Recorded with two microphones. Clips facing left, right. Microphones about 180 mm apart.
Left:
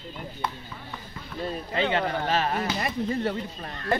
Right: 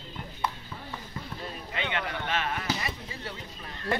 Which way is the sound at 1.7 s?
35° left (ahead or behind).